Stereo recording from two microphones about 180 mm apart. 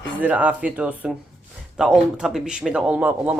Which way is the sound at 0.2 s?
10° right (ahead or behind).